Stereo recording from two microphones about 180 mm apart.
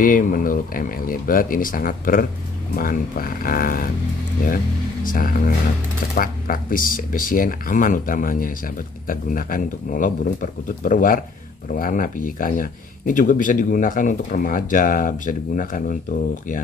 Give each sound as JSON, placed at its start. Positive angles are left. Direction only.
{"t": 0.0, "sound": "speech", "side_deg": 45}
{"t": 5.0, "sound": "speech", "side_deg": 50}